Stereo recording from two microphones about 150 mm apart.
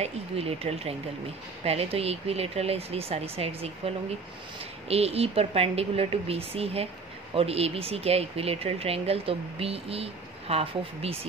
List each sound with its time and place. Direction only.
0.0 s speech: 40° right (ahead or behind)